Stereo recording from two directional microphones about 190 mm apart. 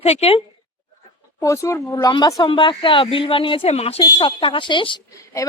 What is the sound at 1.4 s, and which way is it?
Speech, 15° left (ahead or behind).